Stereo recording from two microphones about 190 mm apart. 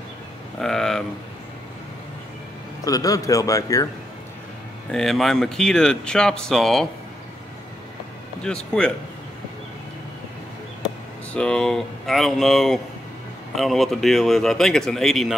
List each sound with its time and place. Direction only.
0.6 s a sound: centre (ahead or behind)
2.8 s speech: 20° left (ahead or behind)
4.9 s speech: centre (ahead or behind)
8.8 s speech: 5° left (ahead or behind)
11.3 s speech: 5° left (ahead or behind)